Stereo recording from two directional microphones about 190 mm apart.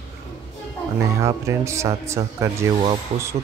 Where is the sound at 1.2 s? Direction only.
15° right (ahead or behind).